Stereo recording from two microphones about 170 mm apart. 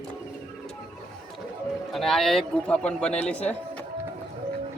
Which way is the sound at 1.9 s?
Centre (ahead or behind).